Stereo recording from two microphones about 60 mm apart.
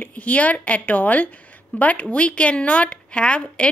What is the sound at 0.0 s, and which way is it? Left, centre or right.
Speech, left.